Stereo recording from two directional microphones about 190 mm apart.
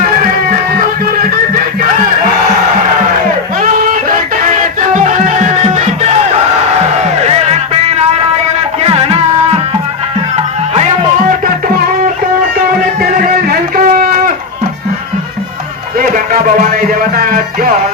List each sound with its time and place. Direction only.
3.6 s music: 45° right (ahead or behind)
10.3 s music: 35° right (ahead or behind)
13.0 s music: 50° right (ahead or behind)
16.0 s music: 45° right (ahead or behind)